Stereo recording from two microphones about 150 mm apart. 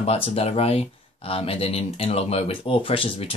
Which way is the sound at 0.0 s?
40° left (ahead or behind).